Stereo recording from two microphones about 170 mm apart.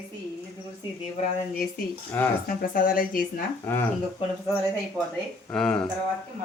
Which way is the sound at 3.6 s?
15° left (ahead or behind).